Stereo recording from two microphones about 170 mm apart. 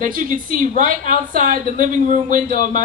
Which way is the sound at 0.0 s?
50° right (ahead or behind).